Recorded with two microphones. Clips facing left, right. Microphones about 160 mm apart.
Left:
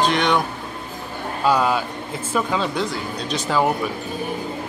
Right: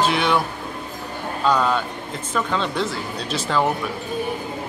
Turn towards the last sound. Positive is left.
turn(degrees=0)  # may be behind; listen again after turning